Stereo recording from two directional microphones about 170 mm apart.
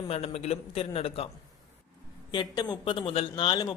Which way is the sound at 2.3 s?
25° left (ahead or behind).